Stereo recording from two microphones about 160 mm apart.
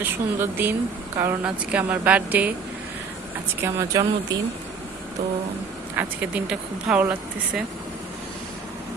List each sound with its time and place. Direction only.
0.0 s speech: 15° right (ahead or behind)
3.6 s speech: 20° right (ahead or behind)
6.0 s speech: 5° right (ahead or behind)